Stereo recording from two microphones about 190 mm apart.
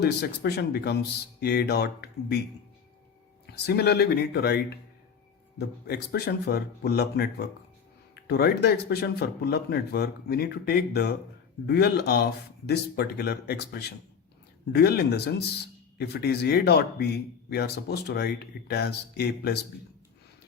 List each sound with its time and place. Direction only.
0.0 s speech: 55° left (ahead or behind)
3.4 s speech: 60° left (ahead or behind)